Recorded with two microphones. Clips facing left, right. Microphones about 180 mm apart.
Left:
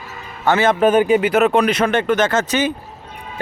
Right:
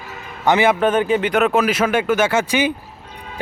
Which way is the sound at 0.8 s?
10° left (ahead or behind).